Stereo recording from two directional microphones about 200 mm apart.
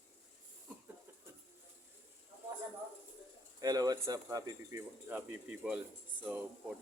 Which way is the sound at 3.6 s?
20° right (ahead or behind).